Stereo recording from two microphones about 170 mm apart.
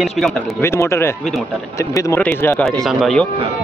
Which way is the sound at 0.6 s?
15° left (ahead or behind).